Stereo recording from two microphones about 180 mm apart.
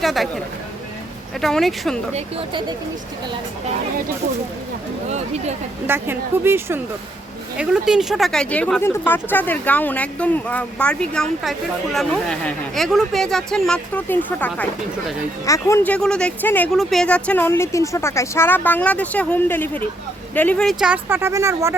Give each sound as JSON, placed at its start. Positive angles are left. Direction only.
{"t": 0.0, "sound": "speech", "side_deg": 0}
{"t": 2.1, "sound": "speech", "side_deg": -30}
{"t": 5.0, "sound": "speech", "side_deg": -40}
{"t": 5.8, "sound": "speech", "side_deg": -10}